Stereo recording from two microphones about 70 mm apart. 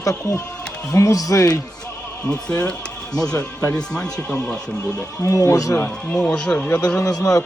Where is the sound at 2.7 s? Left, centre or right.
Centre.